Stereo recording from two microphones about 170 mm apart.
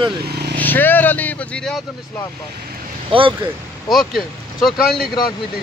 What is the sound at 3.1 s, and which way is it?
Speech, 30° right (ahead or behind).